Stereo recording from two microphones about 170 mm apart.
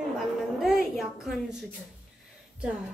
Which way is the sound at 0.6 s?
Centre (ahead or behind).